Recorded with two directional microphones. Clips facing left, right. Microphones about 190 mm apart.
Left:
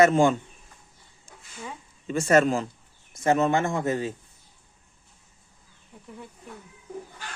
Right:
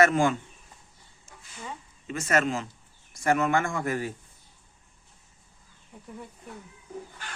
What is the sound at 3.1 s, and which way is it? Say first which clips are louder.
A man's voice: left 2 dB; 20° left (ahead or behind).